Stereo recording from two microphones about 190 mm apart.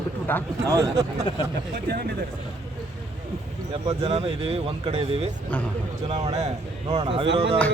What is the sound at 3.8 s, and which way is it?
Speech, 35° right (ahead or behind).